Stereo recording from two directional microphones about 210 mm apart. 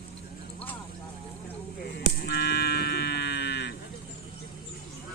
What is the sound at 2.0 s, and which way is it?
Livestock, 50° left (ahead or behind).